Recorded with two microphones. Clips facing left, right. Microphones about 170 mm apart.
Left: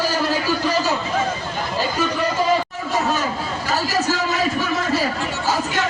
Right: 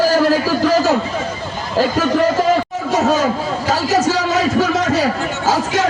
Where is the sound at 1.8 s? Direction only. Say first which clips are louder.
Right 8 dB; 90° right.